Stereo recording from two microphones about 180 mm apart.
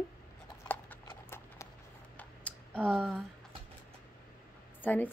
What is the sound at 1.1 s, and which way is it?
Clip-clop, 15° left (ahead or behind).